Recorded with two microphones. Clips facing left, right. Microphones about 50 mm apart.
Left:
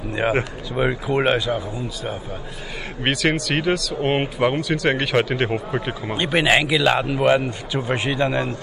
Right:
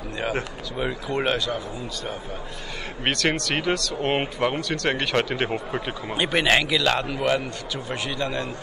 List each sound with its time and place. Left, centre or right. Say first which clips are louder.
0.1 s a man's voice: left 7 dB; left
3.0 s a man's voice: left 3 dB; centre; by 8.5 s left